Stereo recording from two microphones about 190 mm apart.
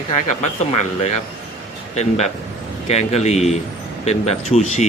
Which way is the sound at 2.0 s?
35° left (ahead or behind).